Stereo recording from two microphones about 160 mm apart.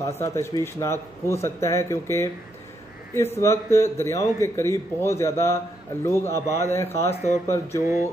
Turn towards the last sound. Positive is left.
turn(degrees=15)  # may be behind; listen again after turning